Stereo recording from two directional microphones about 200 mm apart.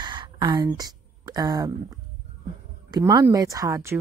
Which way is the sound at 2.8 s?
20° right (ahead or behind).